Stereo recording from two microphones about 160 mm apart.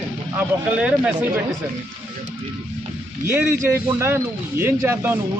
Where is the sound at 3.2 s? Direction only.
15° right (ahead or behind).